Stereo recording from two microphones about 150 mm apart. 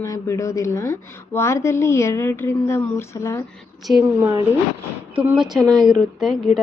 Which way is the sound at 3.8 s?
Centre (ahead or behind).